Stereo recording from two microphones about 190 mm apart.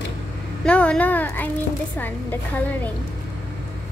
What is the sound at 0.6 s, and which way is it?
A woman's voice, 5° left (ahead or behind).